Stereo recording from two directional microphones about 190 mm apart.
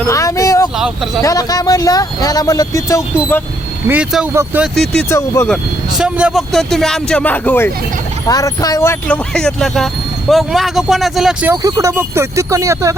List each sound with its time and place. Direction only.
0.1 s a sound: 15° left (ahead or behind)
1.2 s speech: 20° left (ahead or behind)
3.8 s speech: 5° right (ahead or behind)
5.0 s speech: 15° left (ahead or behind)
6.0 s speech: 5° right (ahead or behind); by 9.1 s 15° left (ahead or behind)
9.3 s speech: 5° left (ahead or behind)
11.5 s speech: 15° right (ahead or behind)